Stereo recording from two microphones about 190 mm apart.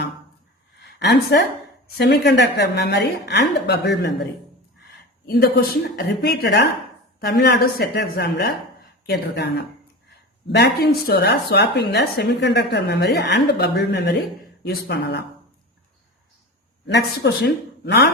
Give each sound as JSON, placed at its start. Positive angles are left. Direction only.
{"t": 0.8, "sound": "a woman's voice", "side_deg": 60}
{"t": 16.8, "sound": "a woman's voice", "side_deg": 65}